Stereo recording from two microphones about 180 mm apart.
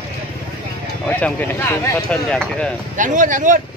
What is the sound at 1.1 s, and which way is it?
Speech, 10° left (ahead or behind).